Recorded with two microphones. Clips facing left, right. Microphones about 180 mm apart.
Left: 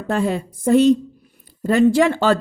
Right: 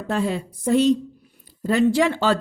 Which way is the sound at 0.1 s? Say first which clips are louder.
Left 3 dB; 50° left (ahead or behind).